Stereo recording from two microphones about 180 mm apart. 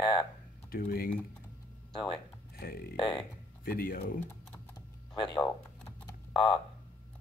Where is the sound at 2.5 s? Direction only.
55° left (ahead or behind).